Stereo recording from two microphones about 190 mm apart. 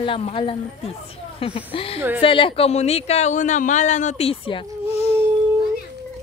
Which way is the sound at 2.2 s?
25° left (ahead or behind).